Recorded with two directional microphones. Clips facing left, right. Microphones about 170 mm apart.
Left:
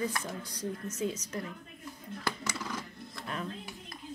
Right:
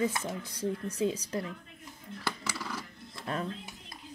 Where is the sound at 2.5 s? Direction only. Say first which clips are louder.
Left 1 dB; 15° left (ahead or behind).